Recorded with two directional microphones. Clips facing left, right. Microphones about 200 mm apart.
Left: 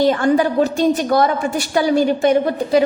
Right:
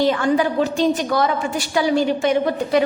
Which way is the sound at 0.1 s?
40° left (ahead or behind).